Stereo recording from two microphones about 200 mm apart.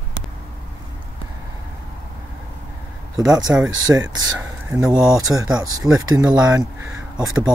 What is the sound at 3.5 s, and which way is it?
Speech, 10° right (ahead or behind).